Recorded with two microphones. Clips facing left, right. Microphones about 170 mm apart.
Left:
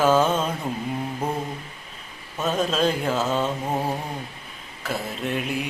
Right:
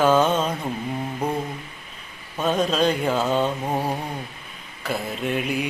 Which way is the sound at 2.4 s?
Centre (ahead or behind).